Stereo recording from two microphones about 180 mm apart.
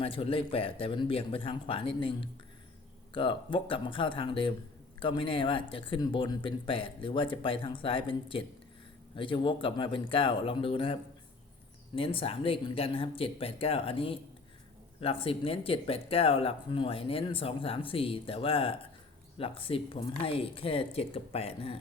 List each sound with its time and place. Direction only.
0.0 s speech: 30° left (ahead or behind)
11.9 s speech: 30° left (ahead or behind)